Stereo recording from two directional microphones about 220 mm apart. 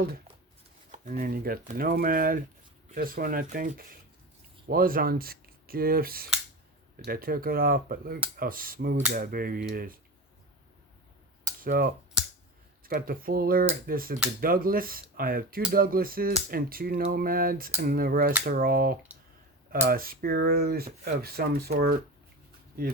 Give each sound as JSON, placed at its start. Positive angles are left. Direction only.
{"t": 0.9, "sound": "speech", "side_deg": -40}
{"t": 11.6, "sound": "speech", "side_deg": -40}